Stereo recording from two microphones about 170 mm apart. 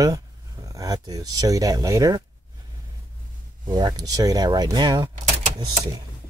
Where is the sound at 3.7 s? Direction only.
25° right (ahead or behind).